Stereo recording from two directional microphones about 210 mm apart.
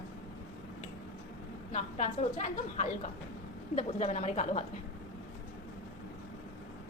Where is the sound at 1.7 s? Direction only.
35° left (ahead or behind).